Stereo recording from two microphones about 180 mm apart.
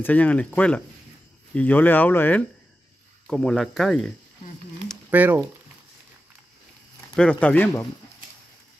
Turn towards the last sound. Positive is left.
turn(degrees=10)  # may be behind; listen again after turning